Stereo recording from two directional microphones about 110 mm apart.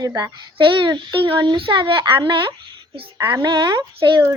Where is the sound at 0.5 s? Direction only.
50° right (ahead or behind).